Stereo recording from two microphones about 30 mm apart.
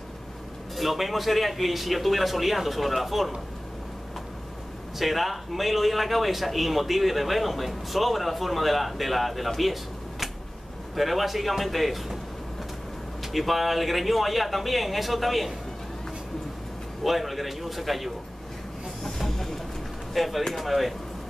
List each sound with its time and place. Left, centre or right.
0.7 s a man's voice: centre
4.9 s a man's voice: centre
11.0 s a man's voice: centre
13.2 s a man's voice: centre
17.0 s a man's voice: centre
19.0 s music: centre
20.2 s a man's voice: centre